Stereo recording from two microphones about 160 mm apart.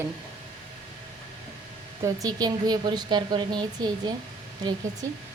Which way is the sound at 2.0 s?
20° right (ahead or behind).